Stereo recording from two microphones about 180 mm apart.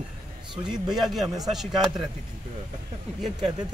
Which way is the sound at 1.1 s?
Centre (ahead or behind).